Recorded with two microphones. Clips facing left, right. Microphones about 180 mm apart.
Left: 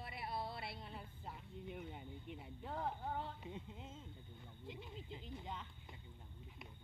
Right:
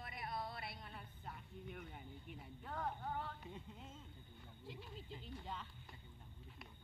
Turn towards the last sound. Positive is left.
turn(degrees=20)  # may be behind; listen again after turning